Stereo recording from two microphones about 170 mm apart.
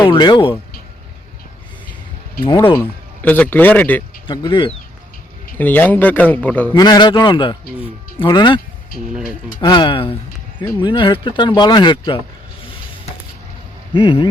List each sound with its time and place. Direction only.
0.1 s speech: 30° left (ahead or behind)
2.7 s speech: 10° left (ahead or behind)
4.3 s speech: 30° left (ahead or behind)
5.5 s speech: 10° left (ahead or behind)
6.7 s speech: 25° left (ahead or behind)
13.9 s speech: 30° left (ahead or behind)